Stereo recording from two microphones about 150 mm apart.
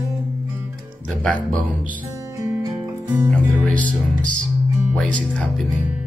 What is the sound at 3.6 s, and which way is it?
Speech, 10° left (ahead or behind).